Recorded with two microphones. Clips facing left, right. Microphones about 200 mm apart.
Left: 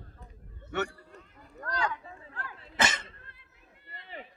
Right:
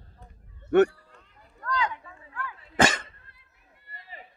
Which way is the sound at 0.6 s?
55° right (ahead or behind).